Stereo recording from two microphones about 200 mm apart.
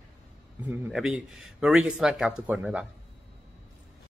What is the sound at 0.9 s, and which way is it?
Speech, 5° right (ahead or behind).